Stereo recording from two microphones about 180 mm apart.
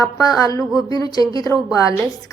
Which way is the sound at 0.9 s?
20° left (ahead or behind).